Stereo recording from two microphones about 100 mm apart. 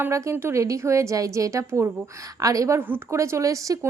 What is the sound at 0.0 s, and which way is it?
A woman's voice, 30° right (ahead or behind).